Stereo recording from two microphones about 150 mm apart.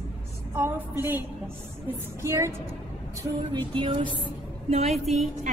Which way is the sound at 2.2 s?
20° right (ahead or behind).